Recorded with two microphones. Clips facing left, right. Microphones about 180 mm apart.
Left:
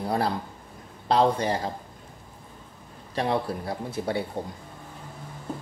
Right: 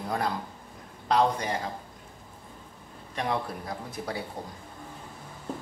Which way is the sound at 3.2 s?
30° left (ahead or behind).